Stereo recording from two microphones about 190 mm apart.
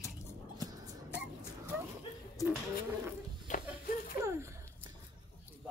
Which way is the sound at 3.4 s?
45° left (ahead or behind).